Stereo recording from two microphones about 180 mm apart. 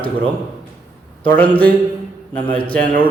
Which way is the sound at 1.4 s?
10° left (ahead or behind).